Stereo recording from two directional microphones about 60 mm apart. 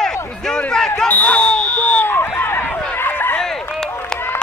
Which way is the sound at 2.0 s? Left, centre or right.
Left.